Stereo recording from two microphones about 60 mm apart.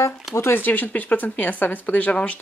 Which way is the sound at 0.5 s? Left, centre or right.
Left.